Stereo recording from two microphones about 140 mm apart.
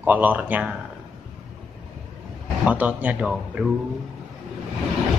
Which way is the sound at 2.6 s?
10° right (ahead or behind).